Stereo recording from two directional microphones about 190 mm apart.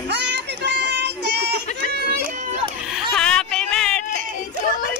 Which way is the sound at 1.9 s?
55° right (ahead or behind).